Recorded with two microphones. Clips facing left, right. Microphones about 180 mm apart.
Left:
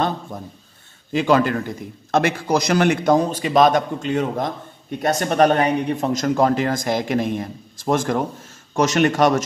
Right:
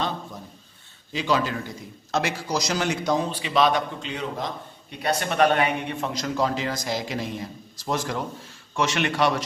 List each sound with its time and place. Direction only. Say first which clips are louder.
1.1 s a man's voice: left 7 dB; 55° left (ahead or behind)